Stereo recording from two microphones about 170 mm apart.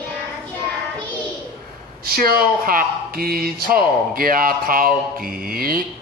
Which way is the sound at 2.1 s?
60° right (ahead or behind).